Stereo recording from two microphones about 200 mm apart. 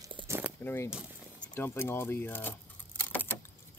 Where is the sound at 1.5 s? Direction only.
10° left (ahead or behind).